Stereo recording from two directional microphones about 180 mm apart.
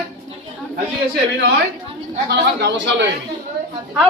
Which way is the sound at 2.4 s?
70° right (ahead or behind).